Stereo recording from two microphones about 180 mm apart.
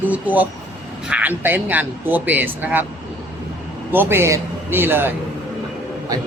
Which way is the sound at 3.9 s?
15° right (ahead or behind).